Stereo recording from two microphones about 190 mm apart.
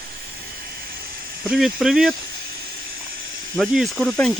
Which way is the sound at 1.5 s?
Centre (ahead or behind).